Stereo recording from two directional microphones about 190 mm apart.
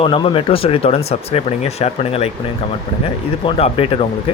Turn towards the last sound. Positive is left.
turn(degrees=30)  # may be behind; listen again after turning